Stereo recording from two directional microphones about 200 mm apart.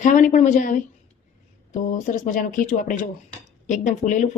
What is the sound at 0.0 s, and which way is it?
Speech, 40° left (ahead or behind).